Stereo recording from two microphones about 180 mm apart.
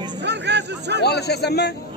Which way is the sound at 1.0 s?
65° left (ahead or behind).